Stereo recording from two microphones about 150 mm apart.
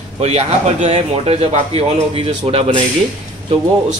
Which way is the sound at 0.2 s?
45° right (ahead or behind).